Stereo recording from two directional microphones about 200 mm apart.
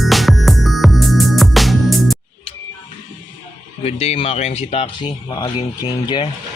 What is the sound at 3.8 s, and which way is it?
Speech, 30° left (ahead or behind).